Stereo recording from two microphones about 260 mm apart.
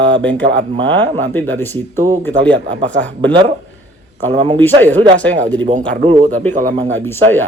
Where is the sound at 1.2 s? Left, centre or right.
Centre.